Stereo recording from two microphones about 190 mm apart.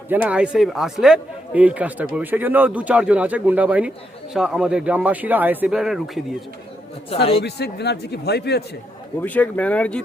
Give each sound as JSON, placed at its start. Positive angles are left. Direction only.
{"t": 0.1, "sound": "a man's voice", "side_deg": -10}
{"t": 7.1, "sound": "a man's voice", "side_deg": 30}
{"t": 7.4, "sound": "a man's voice", "side_deg": 60}
{"t": 9.2, "sound": "speech", "side_deg": 10}